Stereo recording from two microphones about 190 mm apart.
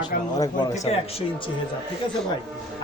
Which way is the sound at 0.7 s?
35° left (ahead or behind).